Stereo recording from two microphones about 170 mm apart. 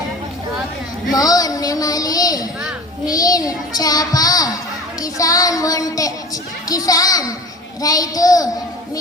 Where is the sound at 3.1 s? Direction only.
20° left (ahead or behind).